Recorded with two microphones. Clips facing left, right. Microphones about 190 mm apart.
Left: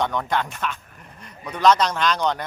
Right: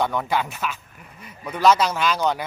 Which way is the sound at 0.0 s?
5° right (ahead or behind).